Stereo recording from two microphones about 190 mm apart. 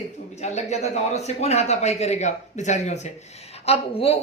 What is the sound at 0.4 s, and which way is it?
Speech, 35° left (ahead or behind).